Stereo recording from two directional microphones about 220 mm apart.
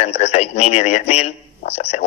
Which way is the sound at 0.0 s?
30° left (ahead or behind).